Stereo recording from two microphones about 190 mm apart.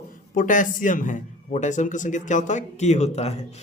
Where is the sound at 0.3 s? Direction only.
45° left (ahead or behind).